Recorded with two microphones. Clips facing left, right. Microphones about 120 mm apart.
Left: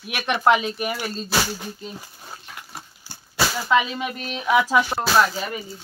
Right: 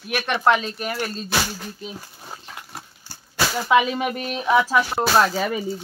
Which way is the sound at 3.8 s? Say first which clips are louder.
Right 4 dB; 50° right (ahead or behind).